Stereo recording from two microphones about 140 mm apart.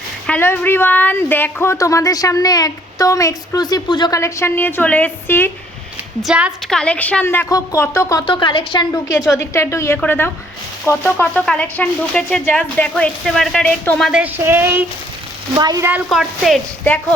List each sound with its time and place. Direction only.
0.3 s speech: 10° left (ahead or behind); by 4.2 s 30° left (ahead or behind)
4.2 s speech: 20° left (ahead or behind)
6.2 s speech: 10° right (ahead or behind)
6.7 s speech: 5° left (ahead or behind); by 8.2 s 20° left (ahead or behind)
8.3 s speech: 35° left (ahead or behind); by 14.1 s 10° left (ahead or behind)
14.1 s speech: 10° right (ahead or behind)
15.5 s a woman's voice: 30° right (ahead or behind)
16.0 s a woman's voice: centre (ahead or behind)